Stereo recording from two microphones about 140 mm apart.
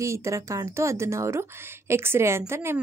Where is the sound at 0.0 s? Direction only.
20° right (ahead or behind).